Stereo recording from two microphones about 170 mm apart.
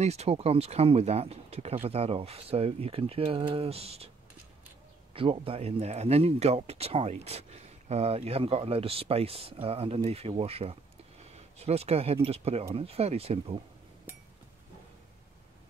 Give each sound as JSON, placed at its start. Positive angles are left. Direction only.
{"t": 0.0, "sound": "speech", "side_deg": -40}
{"t": 5.1, "sound": "speech", "side_deg": -30}